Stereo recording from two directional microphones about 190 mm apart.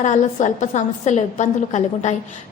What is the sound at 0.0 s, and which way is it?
A woman's voice, 40° left (ahead or behind).